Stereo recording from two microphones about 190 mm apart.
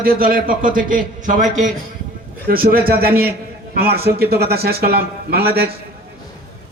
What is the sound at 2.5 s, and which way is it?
A man's voice, 50° right (ahead or behind).